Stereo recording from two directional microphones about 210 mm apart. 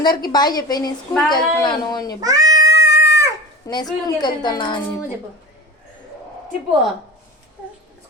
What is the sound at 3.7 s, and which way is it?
A woman's voice, 15° left (ahead or behind).